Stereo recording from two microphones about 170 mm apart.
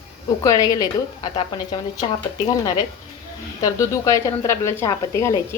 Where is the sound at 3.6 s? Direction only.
20° left (ahead or behind).